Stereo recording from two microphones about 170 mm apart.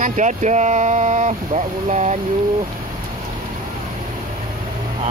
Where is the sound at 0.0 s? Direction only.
45° right (ahead or behind).